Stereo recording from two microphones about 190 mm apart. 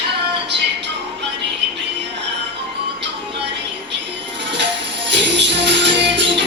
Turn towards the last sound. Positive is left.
turn(degrees=-65)  # may be behind; listen again after turning